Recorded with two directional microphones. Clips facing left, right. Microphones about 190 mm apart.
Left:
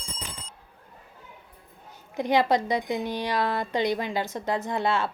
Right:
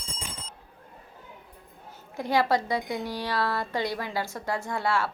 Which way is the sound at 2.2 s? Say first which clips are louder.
Left 2 dB; 20° left (ahead or behind).